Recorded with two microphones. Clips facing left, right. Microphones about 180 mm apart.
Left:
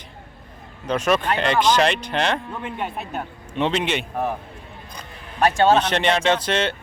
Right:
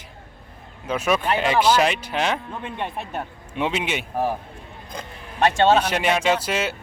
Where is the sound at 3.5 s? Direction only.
10° right (ahead or behind).